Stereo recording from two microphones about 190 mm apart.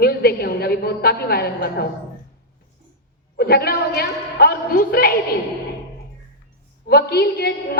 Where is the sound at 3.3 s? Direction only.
55° left (ahead or behind).